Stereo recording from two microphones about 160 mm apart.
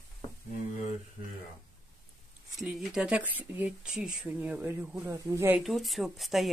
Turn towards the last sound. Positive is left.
turn(degrees=0)  # may be behind; listen again after turning